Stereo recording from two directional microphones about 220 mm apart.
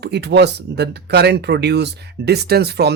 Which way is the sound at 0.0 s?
50° right (ahead or behind).